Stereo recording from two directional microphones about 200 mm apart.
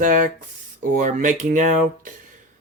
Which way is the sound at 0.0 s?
40° right (ahead or behind).